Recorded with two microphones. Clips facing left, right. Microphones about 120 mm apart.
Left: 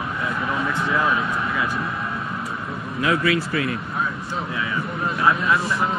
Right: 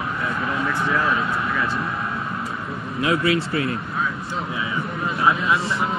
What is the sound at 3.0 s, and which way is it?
Speech, 30° right (ahead or behind).